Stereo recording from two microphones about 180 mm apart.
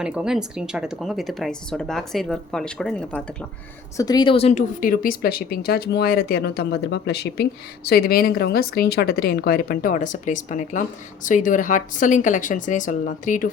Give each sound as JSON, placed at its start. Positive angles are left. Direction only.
{"t": 0.0, "sound": "a woman's voice", "side_deg": -5}
{"t": 3.9, "sound": "a woman's voice", "side_deg": 20}